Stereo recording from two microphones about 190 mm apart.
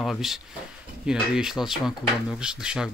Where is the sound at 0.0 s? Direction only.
Centre (ahead or behind).